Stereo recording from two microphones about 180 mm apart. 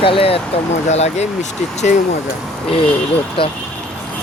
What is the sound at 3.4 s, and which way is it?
Speech, 30° left (ahead or behind).